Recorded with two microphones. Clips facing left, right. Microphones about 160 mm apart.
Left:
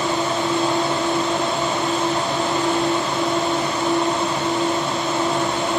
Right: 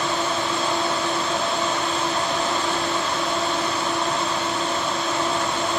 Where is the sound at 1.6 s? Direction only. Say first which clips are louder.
Left 3 dB; 20° left (ahead or behind).